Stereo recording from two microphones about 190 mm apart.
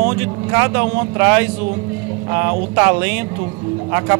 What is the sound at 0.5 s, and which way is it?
Speech, 15° right (ahead or behind).